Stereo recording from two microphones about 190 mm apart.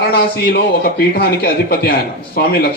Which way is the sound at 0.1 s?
55° left (ahead or behind).